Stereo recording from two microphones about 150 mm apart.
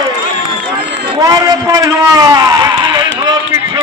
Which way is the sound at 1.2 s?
25° right (ahead or behind).